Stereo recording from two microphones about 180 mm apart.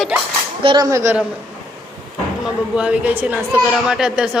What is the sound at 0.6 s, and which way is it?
Speech, 25° right (ahead or behind).